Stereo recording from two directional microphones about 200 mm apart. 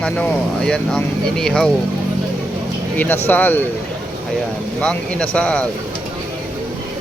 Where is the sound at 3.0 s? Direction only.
10° left (ahead or behind).